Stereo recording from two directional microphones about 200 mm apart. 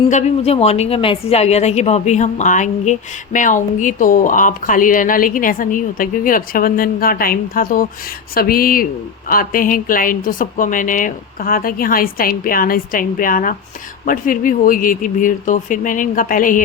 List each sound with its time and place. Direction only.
0.1 s a woman's voice: 35° left (ahead or behind)